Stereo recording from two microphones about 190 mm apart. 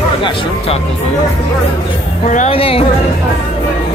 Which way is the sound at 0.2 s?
25° left (ahead or behind).